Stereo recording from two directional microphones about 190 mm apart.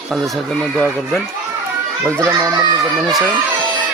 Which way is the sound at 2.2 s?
20° right (ahead or behind).